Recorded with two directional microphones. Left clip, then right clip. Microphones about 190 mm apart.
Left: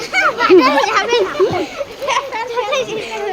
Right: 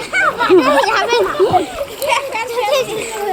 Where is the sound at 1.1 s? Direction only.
5° left (ahead or behind).